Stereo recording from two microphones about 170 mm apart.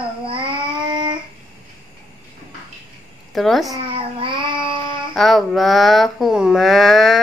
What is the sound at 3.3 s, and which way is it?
Speech, centre (ahead or behind).